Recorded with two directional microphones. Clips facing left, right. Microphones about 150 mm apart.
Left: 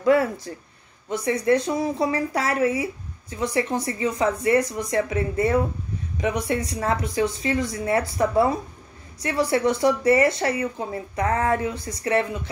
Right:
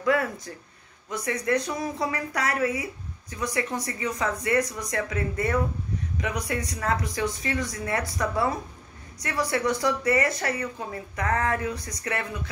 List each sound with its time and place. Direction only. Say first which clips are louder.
0.0 s a woman's voice: left 6 dB; 25° left (ahead or behind)